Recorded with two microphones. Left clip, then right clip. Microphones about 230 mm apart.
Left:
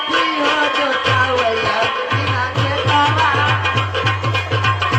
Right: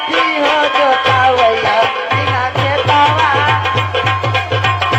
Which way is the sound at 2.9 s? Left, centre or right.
Right.